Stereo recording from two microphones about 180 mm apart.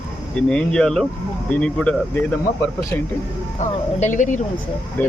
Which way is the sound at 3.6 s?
45° left (ahead or behind).